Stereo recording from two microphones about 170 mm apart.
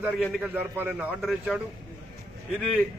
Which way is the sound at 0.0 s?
Centre (ahead or behind).